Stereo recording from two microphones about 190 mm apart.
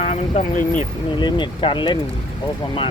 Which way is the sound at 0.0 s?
35° left (ahead or behind).